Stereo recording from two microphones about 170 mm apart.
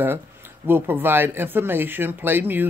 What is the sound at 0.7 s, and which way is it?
Speech, 10° right (ahead or behind).